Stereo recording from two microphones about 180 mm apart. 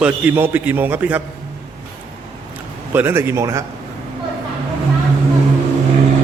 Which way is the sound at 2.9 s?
10° right (ahead or behind).